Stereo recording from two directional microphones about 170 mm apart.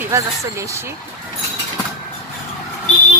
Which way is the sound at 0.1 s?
15° right (ahead or behind).